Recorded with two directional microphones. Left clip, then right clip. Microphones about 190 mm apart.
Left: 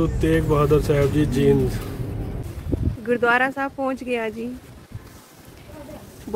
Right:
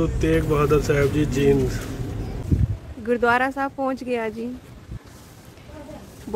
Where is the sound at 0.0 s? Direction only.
15° left (ahead or behind).